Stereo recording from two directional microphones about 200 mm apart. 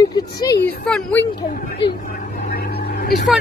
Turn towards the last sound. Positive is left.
turn(degrees=50)  # may be behind; listen again after turning